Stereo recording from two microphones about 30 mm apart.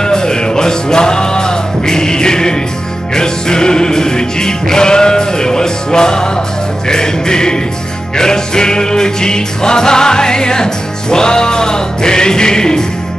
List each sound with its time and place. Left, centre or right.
0.0 s music: left